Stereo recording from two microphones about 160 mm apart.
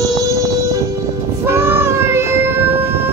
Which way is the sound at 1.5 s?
15° right (ahead or behind).